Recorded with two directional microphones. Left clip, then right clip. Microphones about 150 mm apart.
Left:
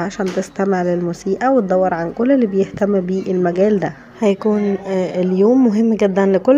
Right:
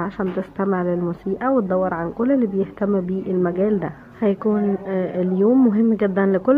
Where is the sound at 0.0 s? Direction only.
30° left (ahead or behind).